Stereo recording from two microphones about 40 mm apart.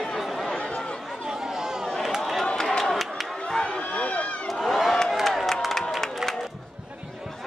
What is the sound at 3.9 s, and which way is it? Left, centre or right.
Run, left.